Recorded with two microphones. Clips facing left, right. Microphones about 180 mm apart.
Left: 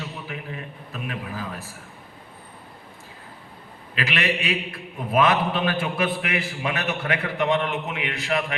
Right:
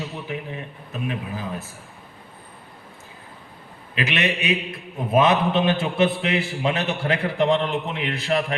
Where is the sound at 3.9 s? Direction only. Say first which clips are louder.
Right 2 dB; 20° right (ahead or behind).